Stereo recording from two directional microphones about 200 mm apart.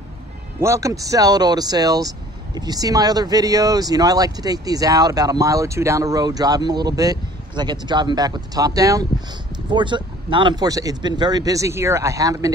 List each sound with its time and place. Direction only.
0.6 s speech: 15° right (ahead or behind)